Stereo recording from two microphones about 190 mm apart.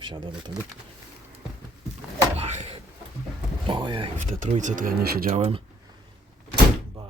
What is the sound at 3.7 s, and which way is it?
Vehicle, 25° right (ahead or behind).